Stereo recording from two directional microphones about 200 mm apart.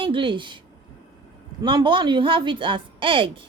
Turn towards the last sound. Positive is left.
turn(degrees=-25)  # may be behind; listen again after turning